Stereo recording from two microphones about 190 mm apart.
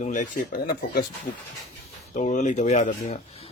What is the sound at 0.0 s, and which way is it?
Speech, 40° left (ahead or behind).